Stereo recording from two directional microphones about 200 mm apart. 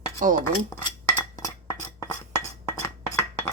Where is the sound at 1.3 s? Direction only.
15° left (ahead or behind).